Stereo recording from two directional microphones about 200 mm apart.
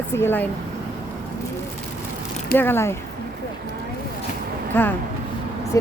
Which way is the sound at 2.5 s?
10° left (ahead or behind).